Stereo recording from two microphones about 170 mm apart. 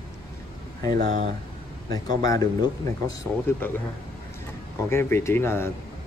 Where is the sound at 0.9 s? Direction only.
55° right (ahead or behind).